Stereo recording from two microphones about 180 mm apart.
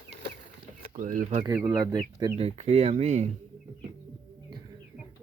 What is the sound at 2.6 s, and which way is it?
Speech, 35° right (ahead or behind).